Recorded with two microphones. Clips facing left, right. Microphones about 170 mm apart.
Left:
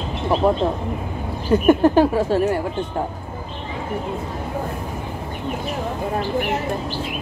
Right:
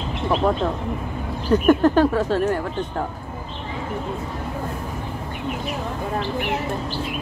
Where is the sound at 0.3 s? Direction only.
35° left (ahead or behind).